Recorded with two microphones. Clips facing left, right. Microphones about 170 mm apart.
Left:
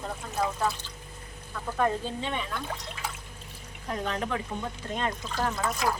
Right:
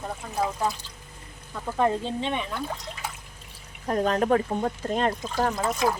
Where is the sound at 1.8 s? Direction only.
25° right (ahead or behind).